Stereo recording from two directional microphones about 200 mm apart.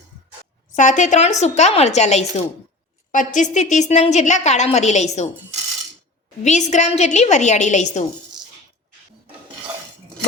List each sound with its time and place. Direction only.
0.7 s a woman's voice: 40° left (ahead or behind)
6.4 s a woman's voice: 35° left (ahead or behind)